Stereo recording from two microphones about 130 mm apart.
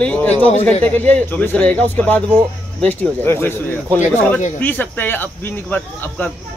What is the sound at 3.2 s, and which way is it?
Speech, 20° left (ahead or behind).